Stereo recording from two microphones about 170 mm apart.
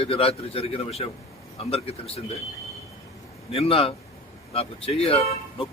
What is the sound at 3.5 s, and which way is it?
Speech, 35° left (ahead or behind).